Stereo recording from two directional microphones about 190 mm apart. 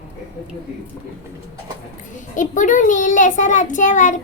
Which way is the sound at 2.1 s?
40° left (ahead or behind).